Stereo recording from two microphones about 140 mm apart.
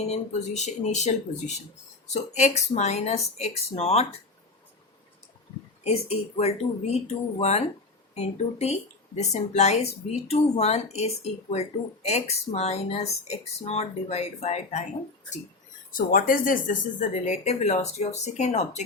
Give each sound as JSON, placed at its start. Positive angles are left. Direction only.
{"t": 0.1, "sound": "speech", "side_deg": 55}
{"t": 5.8, "sound": "speech", "side_deg": 45}
{"t": 15.9, "sound": "speech", "side_deg": 90}